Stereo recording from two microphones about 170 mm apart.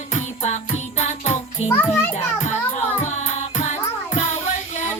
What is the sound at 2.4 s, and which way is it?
Music, 45° left (ahead or behind).